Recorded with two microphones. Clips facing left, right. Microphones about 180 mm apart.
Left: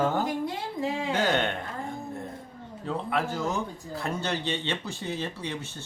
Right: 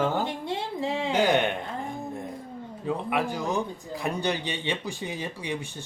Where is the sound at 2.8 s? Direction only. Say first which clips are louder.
Right 2 dB; 15° right (ahead or behind).